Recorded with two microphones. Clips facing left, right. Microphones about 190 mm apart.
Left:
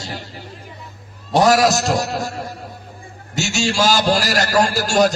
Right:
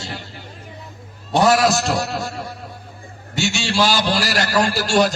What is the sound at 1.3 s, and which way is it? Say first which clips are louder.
A man's voice: left 1 dB; 40° left (ahead or behind).